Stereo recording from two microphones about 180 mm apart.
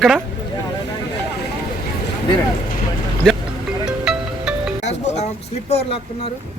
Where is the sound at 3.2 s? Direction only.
5° left (ahead or behind).